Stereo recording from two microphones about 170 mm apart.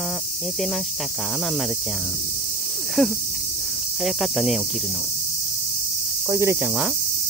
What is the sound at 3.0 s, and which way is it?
Cricket, centre (ahead or behind).